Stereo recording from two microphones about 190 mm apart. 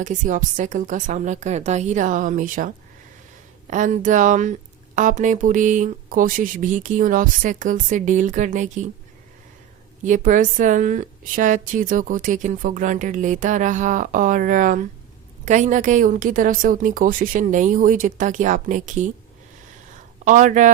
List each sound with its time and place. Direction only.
0.0 s a woman's voice: 40° right (ahead or behind)
10.0 s a woman's voice: 45° right (ahead or behind)
20.2 s a woman's voice: 40° right (ahead or behind)